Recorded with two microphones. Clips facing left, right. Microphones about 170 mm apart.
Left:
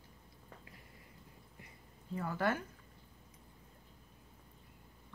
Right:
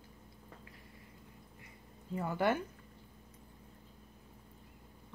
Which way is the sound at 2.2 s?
25° right (ahead or behind).